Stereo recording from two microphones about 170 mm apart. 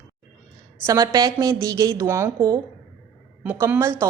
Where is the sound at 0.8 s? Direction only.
20° right (ahead or behind).